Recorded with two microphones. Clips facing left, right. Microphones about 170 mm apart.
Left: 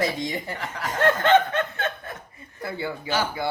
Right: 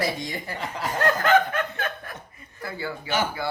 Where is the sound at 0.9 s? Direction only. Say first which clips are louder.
Left 2 dB; 25° left (ahead or behind).